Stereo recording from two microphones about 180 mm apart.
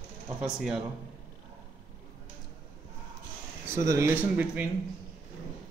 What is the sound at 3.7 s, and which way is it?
Speech, 15° right (ahead or behind).